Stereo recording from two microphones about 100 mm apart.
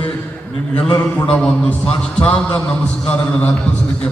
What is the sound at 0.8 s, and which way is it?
Speech, 45° left (ahead or behind).